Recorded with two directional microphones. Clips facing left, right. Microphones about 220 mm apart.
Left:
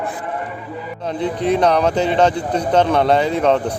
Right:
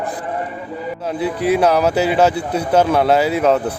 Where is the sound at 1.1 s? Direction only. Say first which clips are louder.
Right 1 dB; 5° right (ahead or behind).